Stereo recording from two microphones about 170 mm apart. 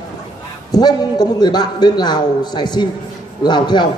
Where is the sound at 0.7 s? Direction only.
25° left (ahead or behind).